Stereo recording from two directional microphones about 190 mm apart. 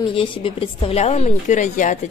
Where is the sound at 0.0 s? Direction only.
25° left (ahead or behind).